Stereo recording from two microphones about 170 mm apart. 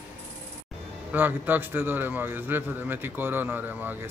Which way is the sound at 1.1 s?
10° right (ahead or behind).